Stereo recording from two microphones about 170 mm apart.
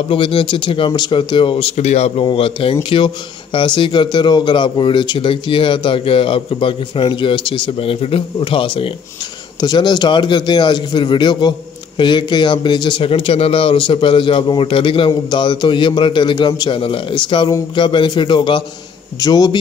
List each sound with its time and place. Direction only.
0.1 s speech: 30° left (ahead or behind)